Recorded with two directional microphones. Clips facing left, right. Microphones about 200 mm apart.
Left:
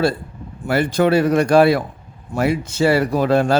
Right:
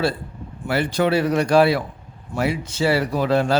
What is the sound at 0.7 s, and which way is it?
A man's voice, 45° left (ahead or behind).